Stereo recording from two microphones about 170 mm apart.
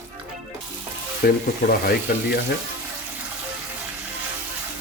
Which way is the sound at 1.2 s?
65° left (ahead or behind).